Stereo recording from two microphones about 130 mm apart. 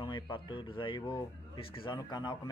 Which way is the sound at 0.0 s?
40° left (ahead or behind).